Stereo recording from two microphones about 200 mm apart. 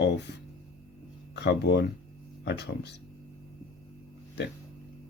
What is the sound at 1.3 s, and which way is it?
Speech, 55° left (ahead or behind).